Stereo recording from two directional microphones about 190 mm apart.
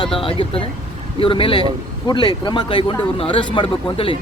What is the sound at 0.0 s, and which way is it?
Speech, 30° left (ahead or behind).